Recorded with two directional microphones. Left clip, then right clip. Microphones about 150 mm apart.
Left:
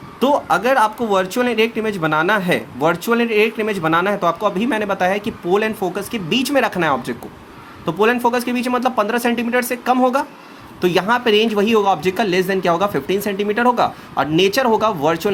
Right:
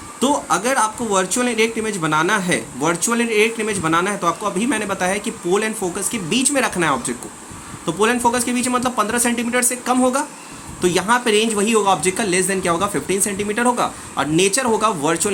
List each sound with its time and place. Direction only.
0.2 s speech: 45° left (ahead or behind)